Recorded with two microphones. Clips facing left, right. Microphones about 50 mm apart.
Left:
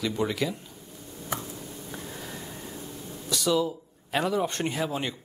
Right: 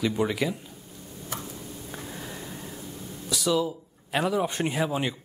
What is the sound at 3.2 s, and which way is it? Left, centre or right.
Speech, centre.